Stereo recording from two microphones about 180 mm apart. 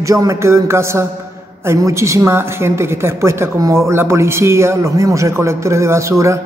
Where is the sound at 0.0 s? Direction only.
20° right (ahead or behind).